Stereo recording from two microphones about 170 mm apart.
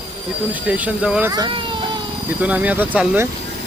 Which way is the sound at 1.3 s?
25° right (ahead or behind).